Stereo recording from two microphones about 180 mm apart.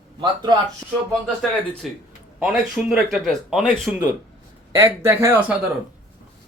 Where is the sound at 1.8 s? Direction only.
Centre (ahead or behind).